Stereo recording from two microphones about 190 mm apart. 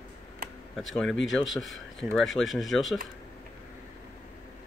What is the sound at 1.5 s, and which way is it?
Speech, centre (ahead or behind).